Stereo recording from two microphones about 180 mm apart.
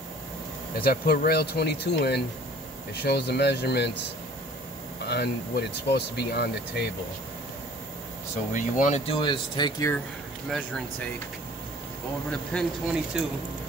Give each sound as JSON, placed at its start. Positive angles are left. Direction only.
{"t": 0.7, "sound": "speech", "side_deg": 55}
{"t": 5.0, "sound": "speech", "side_deg": 65}
{"t": 8.5, "sound": "speech", "side_deg": 45}
{"t": 9.0, "sound": "speech", "side_deg": 30}
{"t": 12.3, "sound": "speech", "side_deg": 0}